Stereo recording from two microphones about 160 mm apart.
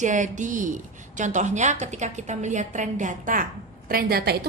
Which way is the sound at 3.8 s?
75° right (ahead or behind).